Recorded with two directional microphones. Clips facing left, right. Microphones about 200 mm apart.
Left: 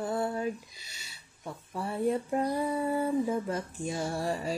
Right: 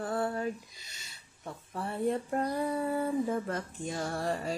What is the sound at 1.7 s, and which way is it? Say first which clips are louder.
Speech: left 2 dB; 10° left (ahead or behind).